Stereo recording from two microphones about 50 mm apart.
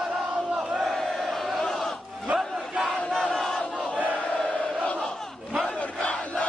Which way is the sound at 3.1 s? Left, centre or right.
Centre.